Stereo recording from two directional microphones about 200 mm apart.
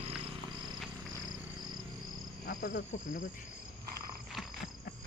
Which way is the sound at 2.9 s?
40° left (ahead or behind).